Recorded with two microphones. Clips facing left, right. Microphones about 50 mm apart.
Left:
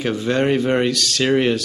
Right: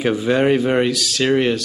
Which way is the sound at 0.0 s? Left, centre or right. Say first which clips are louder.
Right 3 dB; centre.